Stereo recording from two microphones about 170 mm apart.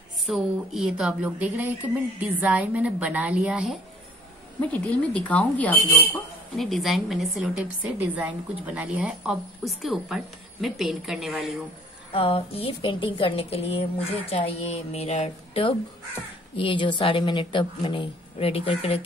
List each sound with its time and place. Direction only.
0.3 s a woman's voice: centre (ahead or behind)
4.6 s a woman's voice: 10° left (ahead or behind)
12.1 s a woman's voice: 35° left (ahead or behind)